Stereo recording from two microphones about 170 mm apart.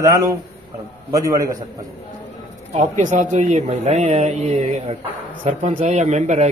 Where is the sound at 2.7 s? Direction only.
45° right (ahead or behind).